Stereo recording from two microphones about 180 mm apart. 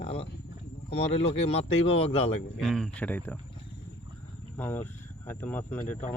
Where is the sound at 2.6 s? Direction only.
Centre (ahead or behind).